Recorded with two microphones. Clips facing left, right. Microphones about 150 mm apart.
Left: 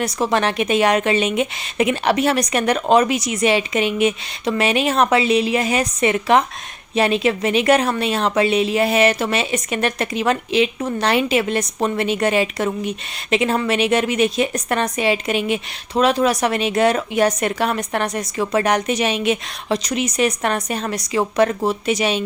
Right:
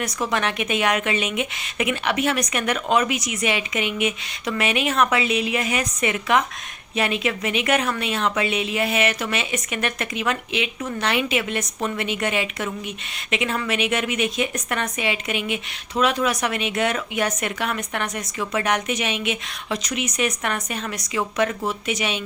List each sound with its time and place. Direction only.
0.0 s a woman's voice: 30° left (ahead or behind)